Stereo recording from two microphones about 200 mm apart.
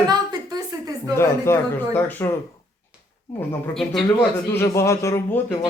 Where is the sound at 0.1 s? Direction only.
20° right (ahead or behind).